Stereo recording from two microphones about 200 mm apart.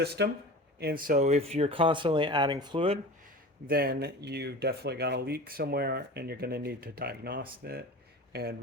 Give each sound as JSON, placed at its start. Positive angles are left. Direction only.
{"t": 0.0, "sound": "speech", "side_deg": -55}
{"t": 3.7, "sound": "speech", "side_deg": -50}